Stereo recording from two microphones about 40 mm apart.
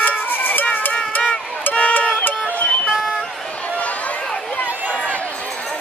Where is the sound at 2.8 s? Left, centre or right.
Centre.